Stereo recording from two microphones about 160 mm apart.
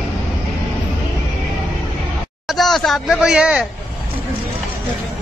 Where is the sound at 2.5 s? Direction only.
Centre (ahead or behind).